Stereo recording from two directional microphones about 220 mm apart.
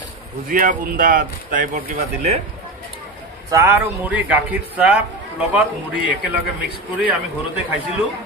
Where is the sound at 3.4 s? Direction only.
15° right (ahead or behind).